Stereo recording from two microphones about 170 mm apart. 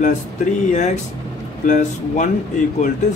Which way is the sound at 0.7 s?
45° left (ahead or behind).